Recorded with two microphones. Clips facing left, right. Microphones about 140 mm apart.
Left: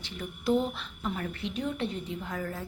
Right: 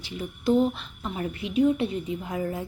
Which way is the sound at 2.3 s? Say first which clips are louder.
Right 6 dB; 15° right (ahead or behind).